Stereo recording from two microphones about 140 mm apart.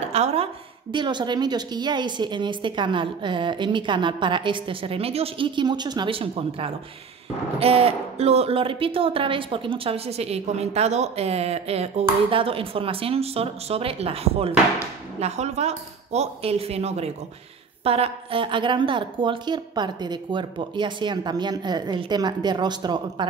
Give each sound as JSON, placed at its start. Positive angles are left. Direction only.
{"t": 0.1, "sound": "a woman's voice", "side_deg": -50}
{"t": 0.9, "sound": "a woman's voice", "side_deg": -35}